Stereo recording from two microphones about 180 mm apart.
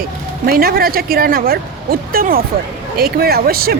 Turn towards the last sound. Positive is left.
turn(degrees=-55)  # may be behind; listen again after turning